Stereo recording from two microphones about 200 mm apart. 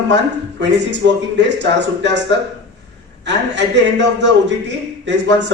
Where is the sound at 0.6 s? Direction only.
60° right (ahead or behind).